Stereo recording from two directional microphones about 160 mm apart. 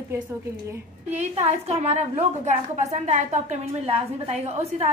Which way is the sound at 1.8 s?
45° right (ahead or behind).